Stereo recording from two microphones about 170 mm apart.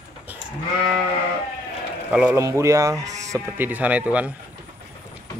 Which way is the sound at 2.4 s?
15° right (ahead or behind).